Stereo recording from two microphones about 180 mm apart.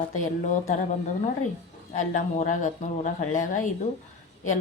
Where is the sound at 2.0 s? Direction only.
45° left (ahead or behind).